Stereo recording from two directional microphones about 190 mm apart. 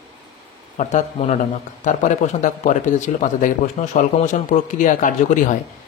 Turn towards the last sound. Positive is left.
turn(degrees=45)  # may be behind; listen again after turning